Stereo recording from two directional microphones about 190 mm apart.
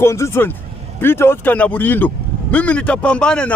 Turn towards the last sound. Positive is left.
turn(degrees=5)  # may be behind; listen again after turning